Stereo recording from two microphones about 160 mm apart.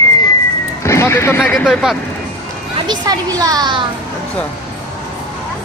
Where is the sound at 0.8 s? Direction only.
15° left (ahead or behind).